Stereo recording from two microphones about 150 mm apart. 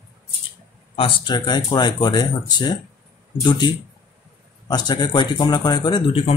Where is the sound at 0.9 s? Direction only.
35° left (ahead or behind).